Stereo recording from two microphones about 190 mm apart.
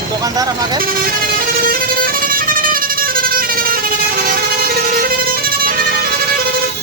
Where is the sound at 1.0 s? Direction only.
50° right (ahead or behind).